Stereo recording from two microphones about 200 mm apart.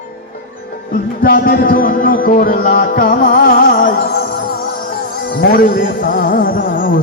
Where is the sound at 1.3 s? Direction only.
45° left (ahead or behind).